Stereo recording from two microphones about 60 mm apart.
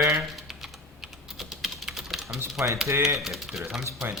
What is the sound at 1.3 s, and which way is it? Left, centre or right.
Typing, centre.